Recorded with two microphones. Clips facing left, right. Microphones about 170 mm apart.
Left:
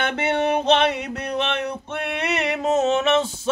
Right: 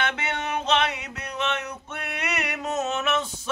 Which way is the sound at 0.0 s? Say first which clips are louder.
Left 7 dB; 55° left (ahead or behind).